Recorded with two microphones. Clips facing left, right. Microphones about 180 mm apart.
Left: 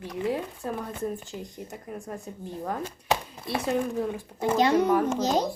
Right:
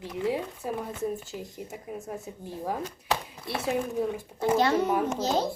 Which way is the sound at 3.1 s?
20° left (ahead or behind).